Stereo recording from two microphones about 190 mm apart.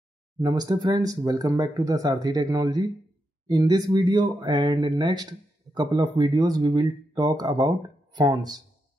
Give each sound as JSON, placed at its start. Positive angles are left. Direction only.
{"t": 0.4, "sound": "speech", "side_deg": -20}